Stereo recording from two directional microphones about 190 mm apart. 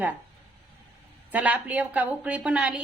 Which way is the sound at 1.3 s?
10° right (ahead or behind).